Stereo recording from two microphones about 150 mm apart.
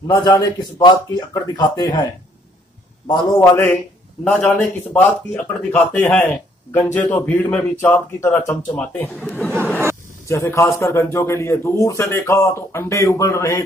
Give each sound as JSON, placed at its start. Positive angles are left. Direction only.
{"t": 0.1, "sound": "a man's voice", "side_deg": 20}
{"t": 3.3, "sound": "a man's voice", "side_deg": 15}
{"t": 10.2, "sound": "a man's voice", "side_deg": 20}